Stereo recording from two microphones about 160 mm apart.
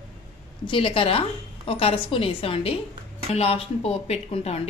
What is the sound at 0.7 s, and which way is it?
A woman's voice, 35° left (ahead or behind).